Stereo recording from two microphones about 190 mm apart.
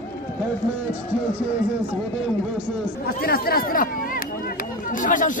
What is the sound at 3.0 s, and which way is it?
Speech, 55° left (ahead or behind).